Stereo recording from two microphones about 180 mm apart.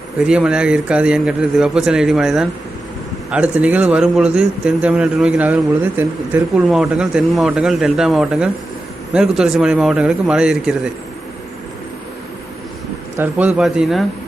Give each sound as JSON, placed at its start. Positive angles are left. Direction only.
{"t": 0.2, "sound": "a man's voice", "side_deg": -5}
{"t": 13.1, "sound": "a man's voice", "side_deg": -10}